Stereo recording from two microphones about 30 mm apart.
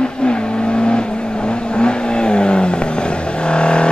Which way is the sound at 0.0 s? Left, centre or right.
Left.